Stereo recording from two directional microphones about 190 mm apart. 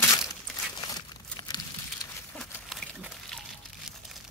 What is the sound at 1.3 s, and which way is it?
Crumpling, 20° left (ahead or behind).